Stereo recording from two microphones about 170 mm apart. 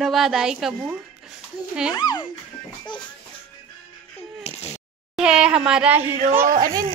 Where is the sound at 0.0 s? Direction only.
Centre (ahead or behind).